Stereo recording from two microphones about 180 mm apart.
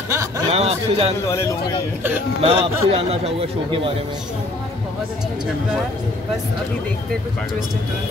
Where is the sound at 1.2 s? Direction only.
15° left (ahead or behind).